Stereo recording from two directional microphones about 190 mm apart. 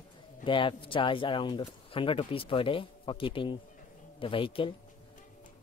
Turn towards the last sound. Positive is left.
turn(degrees=25)  # may be behind; listen again after turning